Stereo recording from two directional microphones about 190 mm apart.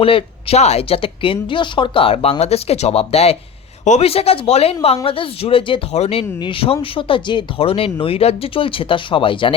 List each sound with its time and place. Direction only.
0.0 s speech: 30° left (ahead or behind)